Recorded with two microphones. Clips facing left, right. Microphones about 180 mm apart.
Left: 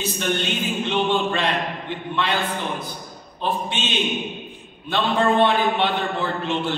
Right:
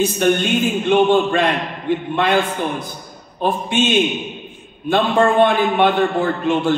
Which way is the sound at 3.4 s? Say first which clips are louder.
Right 6 dB; 50° right (ahead or behind).